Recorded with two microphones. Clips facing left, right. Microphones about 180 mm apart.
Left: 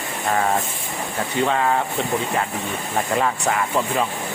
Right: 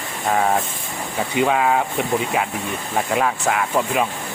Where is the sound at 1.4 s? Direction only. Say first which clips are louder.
Right 2 dB; 10° right (ahead or behind).